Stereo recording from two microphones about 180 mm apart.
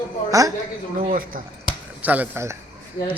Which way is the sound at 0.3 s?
20° right (ahead or behind).